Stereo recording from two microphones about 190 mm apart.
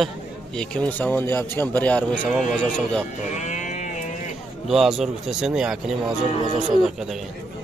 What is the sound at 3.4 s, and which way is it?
Livestock, 40° left (ahead or behind).